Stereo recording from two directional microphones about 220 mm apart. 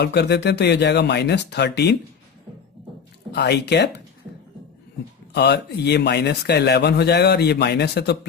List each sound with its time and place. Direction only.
0.0 s speech: 50° left (ahead or behind)
3.3 s speech: 50° left (ahead or behind)
5.3 s speech: 50° left (ahead or behind)